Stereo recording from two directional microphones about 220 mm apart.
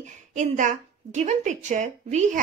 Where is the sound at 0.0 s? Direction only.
35° right (ahead or behind).